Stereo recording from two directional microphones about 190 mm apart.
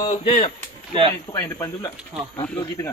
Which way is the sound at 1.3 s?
15° left (ahead or behind).